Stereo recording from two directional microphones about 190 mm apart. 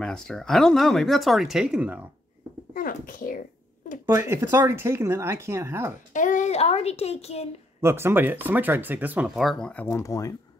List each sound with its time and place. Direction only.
0.0 s speech: 5° left (ahead or behind)
2.7 s a child's voice: 50° left (ahead or behind)
4.0 s speech: 15° right (ahead or behind)
6.1 s speech: 40° left (ahead or behind)
7.8 s speech: 10° right (ahead or behind); by 9.8 s 5° left (ahead or behind)
9.8 s speech: 15° left (ahead or behind)